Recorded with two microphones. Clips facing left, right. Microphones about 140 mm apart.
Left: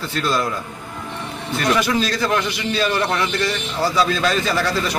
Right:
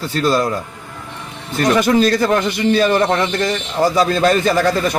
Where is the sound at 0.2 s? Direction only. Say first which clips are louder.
Right 5 dB; 35° right (ahead or behind).